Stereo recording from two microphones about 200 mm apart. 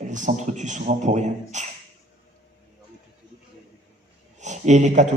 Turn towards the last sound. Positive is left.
turn(degrees=-35)  # may be behind; listen again after turning